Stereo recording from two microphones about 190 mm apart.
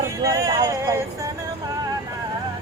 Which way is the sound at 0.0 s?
15° right (ahead or behind).